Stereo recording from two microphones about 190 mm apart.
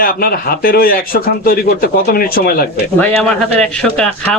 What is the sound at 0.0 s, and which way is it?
A man's voice, 50° left (ahead or behind).